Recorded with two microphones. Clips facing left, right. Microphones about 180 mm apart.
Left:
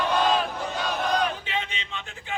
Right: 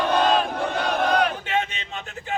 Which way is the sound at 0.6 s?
60° right (ahead or behind).